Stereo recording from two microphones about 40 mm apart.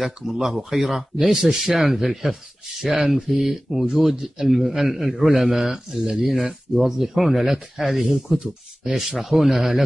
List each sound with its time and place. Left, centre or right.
0.0 s a man's voice: centre
8.4 s speech: centre
9.0 s a man's voice: centre